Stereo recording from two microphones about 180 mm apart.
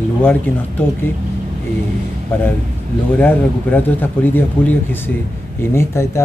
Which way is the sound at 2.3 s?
10° left (ahead or behind).